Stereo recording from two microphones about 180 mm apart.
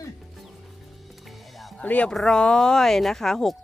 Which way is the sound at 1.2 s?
Centre (ahead or behind).